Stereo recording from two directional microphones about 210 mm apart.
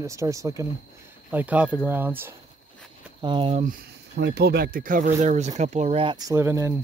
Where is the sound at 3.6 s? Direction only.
40° right (ahead or behind); by 6.8 s 10° right (ahead or behind).